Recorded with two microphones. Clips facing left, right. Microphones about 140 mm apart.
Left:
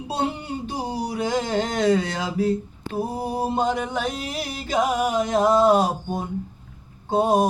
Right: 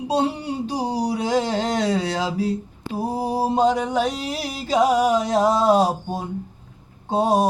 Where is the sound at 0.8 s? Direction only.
35° right (ahead or behind).